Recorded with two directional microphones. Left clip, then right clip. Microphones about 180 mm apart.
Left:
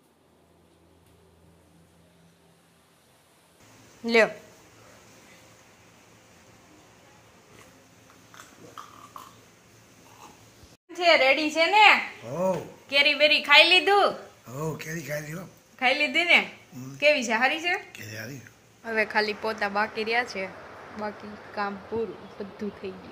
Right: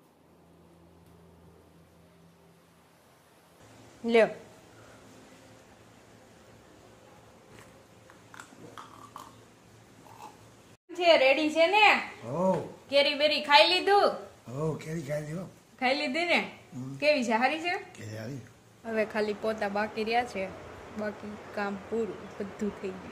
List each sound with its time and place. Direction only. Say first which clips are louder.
4.0 s speech: left 2 dB; centre (ahead or behind)
10.9 s a sound: left 2 dB; 10° left (ahead or behind)
14.8 s a man's voice: left 2 dB; 15° right (ahead or behind)
15.8 s a woman's voice: left 5 dB; 15° left (ahead or behind)
17.9 s speech: left 3 dB; 25° right (ahead or behind)
18.9 s a woman's voice: left 4 dB; centre (ahead or behind)